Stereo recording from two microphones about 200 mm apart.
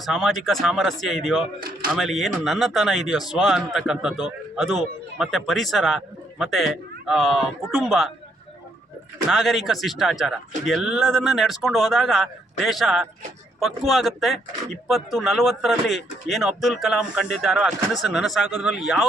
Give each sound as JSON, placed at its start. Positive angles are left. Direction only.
{"t": 0.0, "sound": "a man's voice", "side_deg": 0}
{"t": 1.5, "sound": "speech", "side_deg": -45}
{"t": 2.0, "sound": "a man's voice", "side_deg": 0}
{"t": 9.3, "sound": "a man's voice", "side_deg": 0}